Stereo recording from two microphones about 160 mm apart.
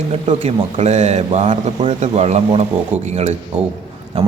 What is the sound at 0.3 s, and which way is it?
A man's voice, 40° right (ahead or behind).